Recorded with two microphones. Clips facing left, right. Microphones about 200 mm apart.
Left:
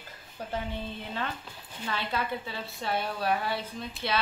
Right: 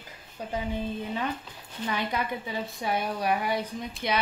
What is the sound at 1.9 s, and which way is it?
A woman's voice, 15° right (ahead or behind).